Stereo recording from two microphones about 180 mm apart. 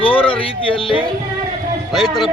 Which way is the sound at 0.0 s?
30° left (ahead or behind).